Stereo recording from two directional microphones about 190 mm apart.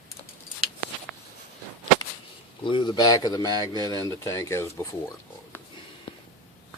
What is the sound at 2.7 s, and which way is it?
Speech, 25° left (ahead or behind).